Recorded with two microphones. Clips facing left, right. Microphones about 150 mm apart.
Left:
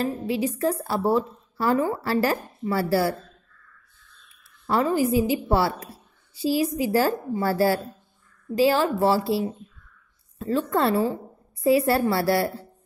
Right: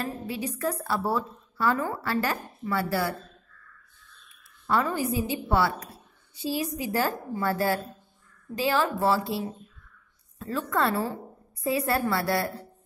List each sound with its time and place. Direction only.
0.0 s a woman's voice: 30° left (ahead or behind)
4.6 s a woman's voice: 30° left (ahead or behind)
10.4 s a woman's voice: 30° left (ahead or behind)